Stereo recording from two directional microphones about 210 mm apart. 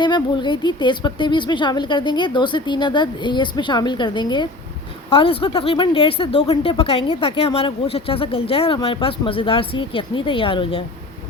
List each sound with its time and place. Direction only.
0.0 s speech: 20° left (ahead or behind)